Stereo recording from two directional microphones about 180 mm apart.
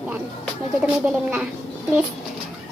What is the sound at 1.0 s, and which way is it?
Speech, 5° right (ahead or behind).